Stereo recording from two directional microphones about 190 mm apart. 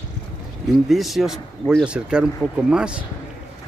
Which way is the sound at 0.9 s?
Centre (ahead or behind).